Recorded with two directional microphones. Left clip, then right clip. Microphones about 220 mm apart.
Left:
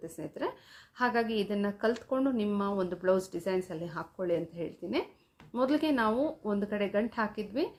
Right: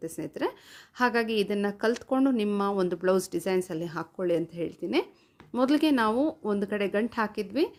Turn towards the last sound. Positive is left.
turn(degrees=-45)  # may be behind; listen again after turning